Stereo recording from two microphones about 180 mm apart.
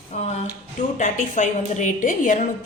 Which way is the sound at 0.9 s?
45° left (ahead or behind).